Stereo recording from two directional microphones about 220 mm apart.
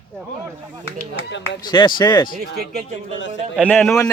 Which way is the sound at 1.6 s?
20° left (ahead or behind).